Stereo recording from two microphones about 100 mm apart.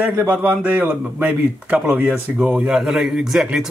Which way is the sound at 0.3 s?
15° right (ahead or behind).